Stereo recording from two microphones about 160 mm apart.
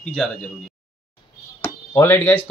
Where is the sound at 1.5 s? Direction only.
15° left (ahead or behind).